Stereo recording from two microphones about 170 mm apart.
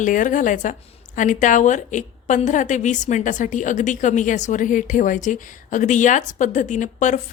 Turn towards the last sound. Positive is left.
turn(degrees=45)  # may be behind; listen again after turning